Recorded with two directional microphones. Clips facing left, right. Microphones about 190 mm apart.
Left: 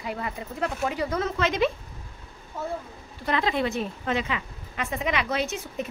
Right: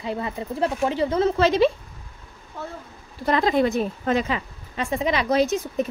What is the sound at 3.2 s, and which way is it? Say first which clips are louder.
A woman's voice: right 6 dB; 40° right (ahead or behind).